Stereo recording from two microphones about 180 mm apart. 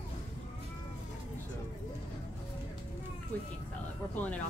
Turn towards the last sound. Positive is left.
turn(degrees=10)  # may be behind; listen again after turning